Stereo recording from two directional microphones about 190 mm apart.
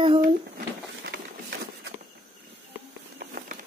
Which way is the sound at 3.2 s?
50° right (ahead or behind).